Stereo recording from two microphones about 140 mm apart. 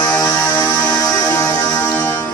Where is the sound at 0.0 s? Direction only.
15° left (ahead or behind).